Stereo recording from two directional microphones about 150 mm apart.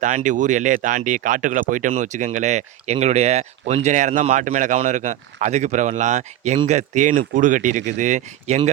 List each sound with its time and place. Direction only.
0.0 s speech: 55° right (ahead or behind)